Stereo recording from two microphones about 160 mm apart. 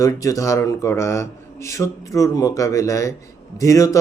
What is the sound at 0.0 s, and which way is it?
Speech, 20° left (ahead or behind).